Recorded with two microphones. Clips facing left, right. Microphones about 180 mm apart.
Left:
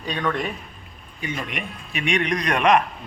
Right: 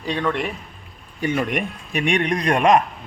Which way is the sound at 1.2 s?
50° right (ahead or behind).